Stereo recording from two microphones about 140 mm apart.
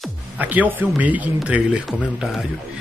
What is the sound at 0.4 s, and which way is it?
A man's voice, 10° right (ahead or behind).